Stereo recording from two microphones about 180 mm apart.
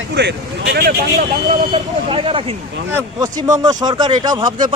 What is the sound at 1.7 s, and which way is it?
Speech, 30° right (ahead or behind).